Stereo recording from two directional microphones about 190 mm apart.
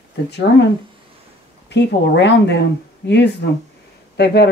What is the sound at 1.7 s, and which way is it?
Speech, 65° left (ahead or behind).